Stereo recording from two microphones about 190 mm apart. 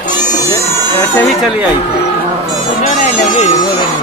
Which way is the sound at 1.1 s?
10° left (ahead or behind).